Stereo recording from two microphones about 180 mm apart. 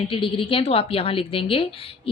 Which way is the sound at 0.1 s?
30° left (ahead or behind).